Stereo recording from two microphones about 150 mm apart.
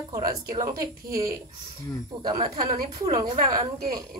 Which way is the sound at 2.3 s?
35° right (ahead or behind).